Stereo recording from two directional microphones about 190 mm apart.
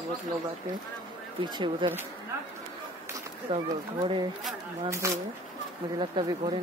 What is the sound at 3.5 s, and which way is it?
Speech, 30° right (ahead or behind).